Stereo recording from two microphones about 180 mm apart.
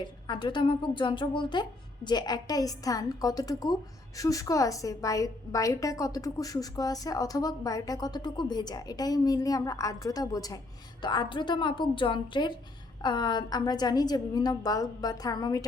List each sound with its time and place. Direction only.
0.0 s a woman's voice: 25° left (ahead or behind)